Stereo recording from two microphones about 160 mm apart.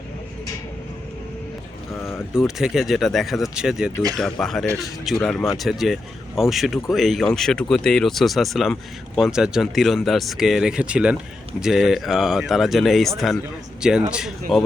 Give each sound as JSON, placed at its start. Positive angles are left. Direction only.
{"t": 1.9, "sound": "vehicle", "side_deg": 15}
{"t": 2.6, "sound": "speech", "side_deg": 0}